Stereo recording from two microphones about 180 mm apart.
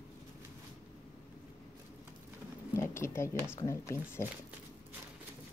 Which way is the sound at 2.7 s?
15° left (ahead or behind).